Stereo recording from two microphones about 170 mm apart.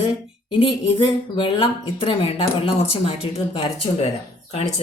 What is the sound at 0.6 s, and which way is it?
Speech, 30° left (ahead or behind).